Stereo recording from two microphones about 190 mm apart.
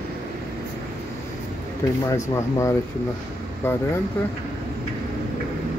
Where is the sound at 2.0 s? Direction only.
15° left (ahead or behind).